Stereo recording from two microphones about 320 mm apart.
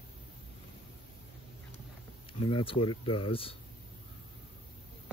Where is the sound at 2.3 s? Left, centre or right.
Centre.